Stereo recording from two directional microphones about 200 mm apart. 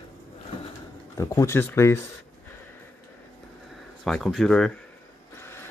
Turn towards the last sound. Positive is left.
turn(degrees=0)  # may be behind; listen again after turning